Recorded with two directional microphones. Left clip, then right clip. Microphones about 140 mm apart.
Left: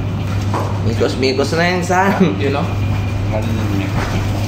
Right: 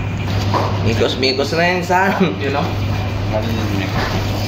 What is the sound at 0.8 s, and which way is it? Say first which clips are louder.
Speech: left 2 dB; 15° left (ahead or behind).